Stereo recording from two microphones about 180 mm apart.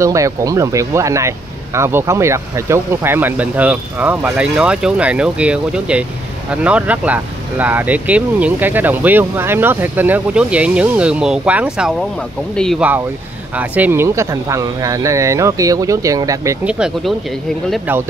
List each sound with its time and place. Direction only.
0.0 s speech: 15° right (ahead or behind); by 12.8 s 5° left (ahead or behind)
13.6 s speech: 10° right (ahead or behind)
16.6 s speech: 5° right (ahead or behind)